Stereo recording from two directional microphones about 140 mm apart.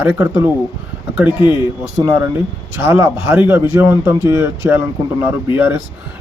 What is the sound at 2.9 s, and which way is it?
Speech, 15° right (ahead or behind).